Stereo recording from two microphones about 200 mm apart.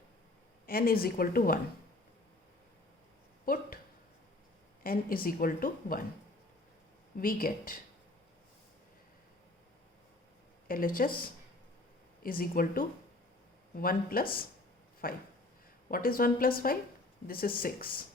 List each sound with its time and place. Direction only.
0.7 s a woman's voice: 50° left (ahead or behind)
3.4 s a sound: 45° left (ahead or behind)
4.8 s a woman's voice: 45° left (ahead or behind)
7.2 s a woman's voice: 45° left (ahead or behind)
10.7 s a woman's voice: 45° left (ahead or behind)
12.2 s a woman's voice: 45° left (ahead or behind)